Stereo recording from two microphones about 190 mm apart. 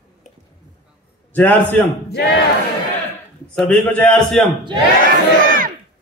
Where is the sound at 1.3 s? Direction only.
10° left (ahead or behind).